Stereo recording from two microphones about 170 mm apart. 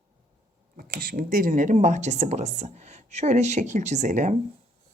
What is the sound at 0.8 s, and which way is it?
Speech, 60° right (ahead or behind).